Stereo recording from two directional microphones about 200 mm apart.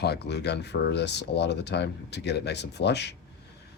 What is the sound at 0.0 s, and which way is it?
Speech, 55° left (ahead or behind).